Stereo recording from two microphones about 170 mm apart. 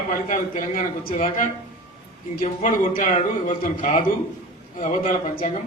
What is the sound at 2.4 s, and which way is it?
A man's voice, 50° left (ahead or behind).